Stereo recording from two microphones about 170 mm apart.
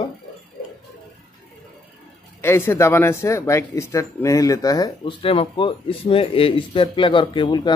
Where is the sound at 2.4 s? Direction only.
15° left (ahead or behind).